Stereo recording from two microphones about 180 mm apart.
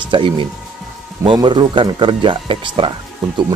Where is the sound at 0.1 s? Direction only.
25° right (ahead or behind).